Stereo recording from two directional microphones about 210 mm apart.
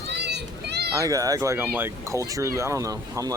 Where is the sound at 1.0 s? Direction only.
15° right (ahead or behind).